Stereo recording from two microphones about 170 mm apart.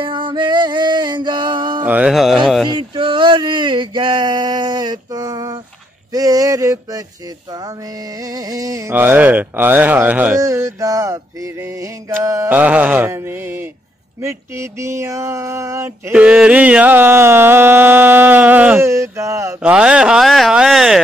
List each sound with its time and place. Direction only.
0.0 s music: 30° right (ahead or behind)
1.9 s speech: 5° right (ahead or behind)
2.7 s speech: 30° right (ahead or behind)
8.2 s speech: 20° right (ahead or behind)
16.1 s speech: 5° right (ahead or behind)
19.6 s speech: 5° right (ahead or behind)